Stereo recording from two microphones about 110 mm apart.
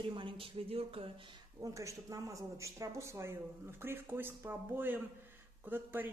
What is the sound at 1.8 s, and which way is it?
A man's voice, 30° right (ahead or behind).